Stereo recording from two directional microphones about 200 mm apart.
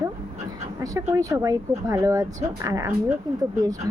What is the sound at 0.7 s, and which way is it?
A woman's voice, 15° right (ahead or behind).